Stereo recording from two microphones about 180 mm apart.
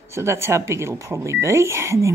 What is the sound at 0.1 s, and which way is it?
Speech, 15° right (ahead or behind).